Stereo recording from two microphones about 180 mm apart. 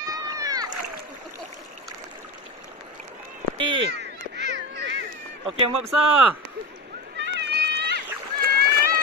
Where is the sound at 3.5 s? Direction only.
25° right (ahead or behind).